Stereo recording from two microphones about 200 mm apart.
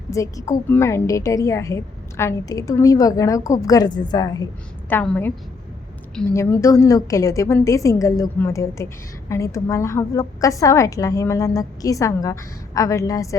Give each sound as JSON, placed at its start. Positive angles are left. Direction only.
{"t": 0.1, "sound": "a woman's voice", "side_deg": 15}
{"t": 6.3, "sound": "a woman's voice", "side_deg": 15}